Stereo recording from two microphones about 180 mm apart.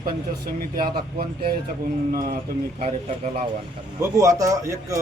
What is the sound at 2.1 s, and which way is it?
Speech, 50° right (ahead or behind).